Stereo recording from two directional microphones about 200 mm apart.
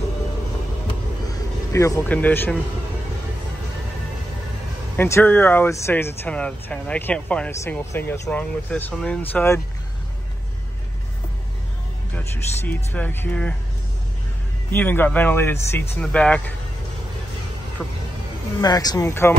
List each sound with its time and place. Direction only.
1.3 s speech: 15° left (ahead or behind)
4.9 s speech: 10° left (ahead or behind)
12.2 s speech: 10° left (ahead or behind)
14.7 s speech: 10° left (ahead or behind)
17.8 s speech: centre (ahead or behind)
18.6 s speech: 20° left (ahead or behind)